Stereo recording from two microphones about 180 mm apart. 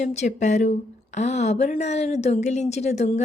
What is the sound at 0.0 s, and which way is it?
Speech, 40° left (ahead or behind).